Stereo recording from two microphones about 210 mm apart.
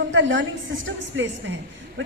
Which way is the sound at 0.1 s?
60° right (ahead or behind).